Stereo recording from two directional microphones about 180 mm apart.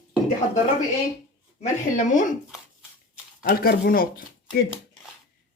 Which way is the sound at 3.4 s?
55° left (ahead or behind).